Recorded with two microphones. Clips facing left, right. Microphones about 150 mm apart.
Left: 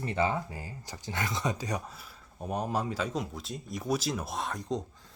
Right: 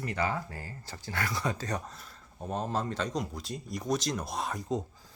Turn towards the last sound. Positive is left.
turn(degrees=-5)  # may be behind; listen again after turning